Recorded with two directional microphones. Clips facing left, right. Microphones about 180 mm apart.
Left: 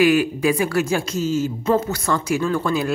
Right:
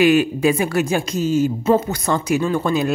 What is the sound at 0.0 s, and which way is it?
Speech, 25° right (ahead or behind).